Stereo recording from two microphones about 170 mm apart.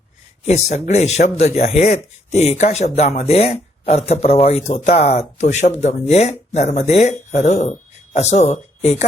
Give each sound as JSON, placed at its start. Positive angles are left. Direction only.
{"t": 0.4, "sound": "speech", "side_deg": 40}